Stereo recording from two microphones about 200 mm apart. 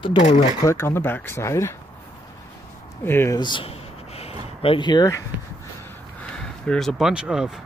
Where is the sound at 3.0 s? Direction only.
10° left (ahead or behind).